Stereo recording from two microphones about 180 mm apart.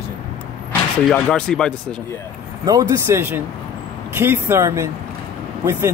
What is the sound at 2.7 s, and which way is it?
Speech, 15° right (ahead or behind).